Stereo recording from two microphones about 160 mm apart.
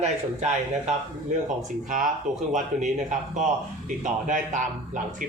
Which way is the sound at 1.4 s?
55° right (ahead or behind).